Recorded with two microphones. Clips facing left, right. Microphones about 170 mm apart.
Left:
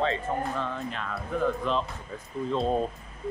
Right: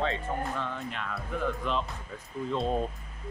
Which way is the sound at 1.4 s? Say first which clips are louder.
Left 4 dB; 35° left (ahead or behind).